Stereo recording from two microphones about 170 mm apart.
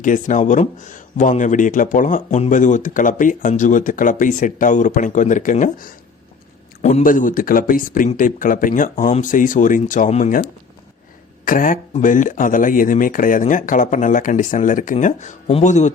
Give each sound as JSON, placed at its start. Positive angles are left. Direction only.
{"t": 0.0, "sound": "speech", "side_deg": 50}
{"t": 11.4, "sound": "speech", "side_deg": 50}